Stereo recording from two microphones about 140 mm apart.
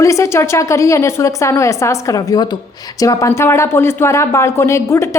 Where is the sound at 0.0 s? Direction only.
20° left (ahead or behind).